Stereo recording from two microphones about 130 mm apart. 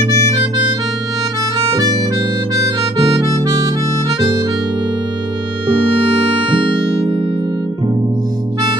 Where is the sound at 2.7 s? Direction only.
45° right (ahead or behind).